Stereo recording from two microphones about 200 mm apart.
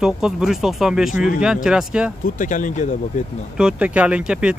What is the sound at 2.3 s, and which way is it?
Speech, 40° left (ahead or behind).